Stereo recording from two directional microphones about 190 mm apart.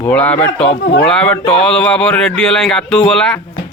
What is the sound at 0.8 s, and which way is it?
Speech, 60° left (ahead or behind).